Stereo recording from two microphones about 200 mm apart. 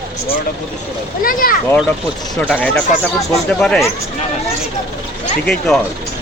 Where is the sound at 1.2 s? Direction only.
45° left (ahead or behind).